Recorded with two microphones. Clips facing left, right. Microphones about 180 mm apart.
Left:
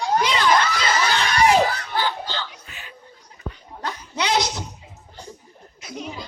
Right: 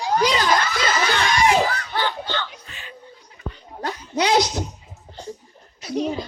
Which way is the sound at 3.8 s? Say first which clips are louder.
Right 4 dB; 45° right (ahead or behind).